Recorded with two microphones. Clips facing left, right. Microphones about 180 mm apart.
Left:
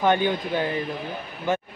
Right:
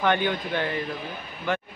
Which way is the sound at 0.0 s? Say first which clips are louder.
Left 3 dB; 15° left (ahead or behind).